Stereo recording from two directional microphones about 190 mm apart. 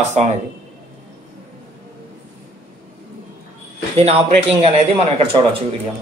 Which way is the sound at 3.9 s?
30° right (ahead or behind).